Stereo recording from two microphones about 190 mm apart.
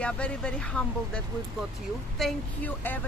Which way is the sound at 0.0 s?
5° left (ahead or behind).